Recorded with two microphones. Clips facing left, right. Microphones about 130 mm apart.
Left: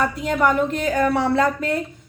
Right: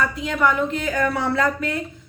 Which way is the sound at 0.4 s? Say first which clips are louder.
Left 1 dB; 30° left (ahead or behind).